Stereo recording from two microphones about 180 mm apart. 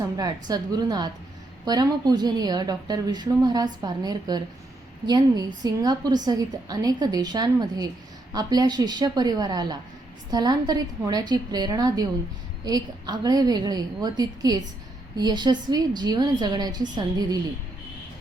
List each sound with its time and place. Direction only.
0.0 s a woman's voice: 20° right (ahead or behind)